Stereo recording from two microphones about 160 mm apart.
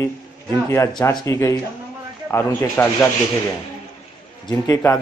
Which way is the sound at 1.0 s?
20° left (ahead or behind).